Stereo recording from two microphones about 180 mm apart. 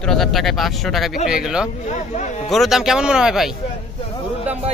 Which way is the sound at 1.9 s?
40° left (ahead or behind).